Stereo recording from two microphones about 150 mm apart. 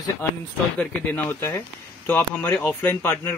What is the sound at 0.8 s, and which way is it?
Speech, 15° left (ahead or behind).